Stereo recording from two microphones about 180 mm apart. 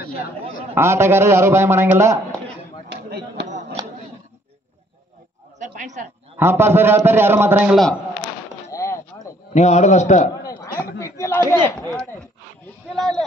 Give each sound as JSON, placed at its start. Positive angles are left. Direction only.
{"t": 0.7, "sound": "a man's voice", "side_deg": -15}
{"t": 2.9, "sound": "chop", "side_deg": -65}
{"t": 5.6, "sound": "a sound", "side_deg": -40}
{"t": 6.3, "sound": "a man's voice", "side_deg": -15}
{"t": 8.6, "sound": "a sound", "side_deg": 15}
{"t": 9.5, "sound": "a man's voice", "side_deg": 40}
{"t": 10.4, "sound": "a sound", "side_deg": 20}
{"t": 11.0, "sound": "speech", "side_deg": 15}
{"t": 11.9, "sound": "speech", "side_deg": 5}